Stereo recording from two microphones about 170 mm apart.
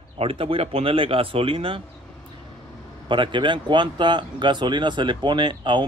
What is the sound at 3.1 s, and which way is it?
Speech, 30° right (ahead or behind).